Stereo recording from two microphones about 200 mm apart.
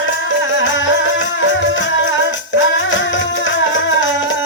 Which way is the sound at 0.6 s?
65° left (ahead or behind).